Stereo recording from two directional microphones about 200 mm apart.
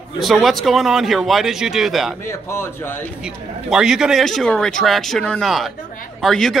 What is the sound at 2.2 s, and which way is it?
Speech, 15° left (ahead or behind).